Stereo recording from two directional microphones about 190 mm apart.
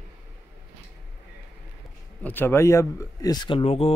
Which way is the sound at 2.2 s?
10° left (ahead or behind).